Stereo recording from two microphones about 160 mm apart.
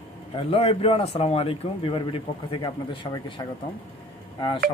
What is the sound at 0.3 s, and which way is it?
Speech, 35° left (ahead or behind).